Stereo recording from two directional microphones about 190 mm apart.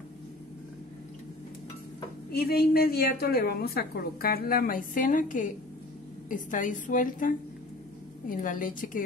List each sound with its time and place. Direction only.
2.3 s a woman's voice: 55° left (ahead or behind)